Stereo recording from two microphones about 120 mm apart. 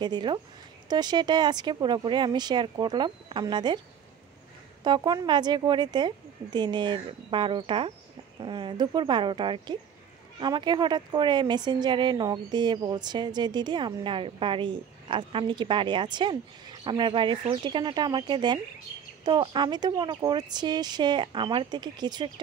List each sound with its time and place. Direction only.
0.0 s a woman's voice: 40° right (ahead or behind)
4.8 s a woman's voice: 35° right (ahead or behind)